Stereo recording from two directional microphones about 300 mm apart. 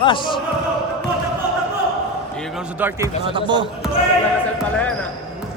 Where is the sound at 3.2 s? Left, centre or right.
Centre.